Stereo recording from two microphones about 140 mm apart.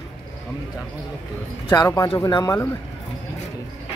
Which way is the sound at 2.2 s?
25° left (ahead or behind).